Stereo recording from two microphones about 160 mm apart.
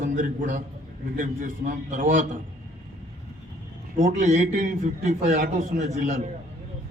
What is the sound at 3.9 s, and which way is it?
A man's voice, 55° right (ahead or behind).